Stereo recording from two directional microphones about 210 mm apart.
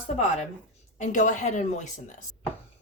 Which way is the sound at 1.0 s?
35° left (ahead or behind).